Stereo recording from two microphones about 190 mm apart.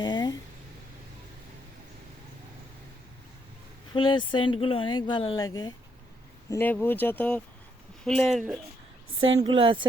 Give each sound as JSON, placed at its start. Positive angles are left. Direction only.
{"t": 0.0, "sound": "a sound", "side_deg": 20}
{"t": 3.9, "sound": "speech", "side_deg": 25}
{"t": 9.4, "sound": "speech", "side_deg": -30}